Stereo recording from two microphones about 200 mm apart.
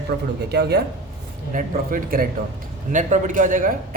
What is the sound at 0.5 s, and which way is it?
A man's voice, 55° right (ahead or behind).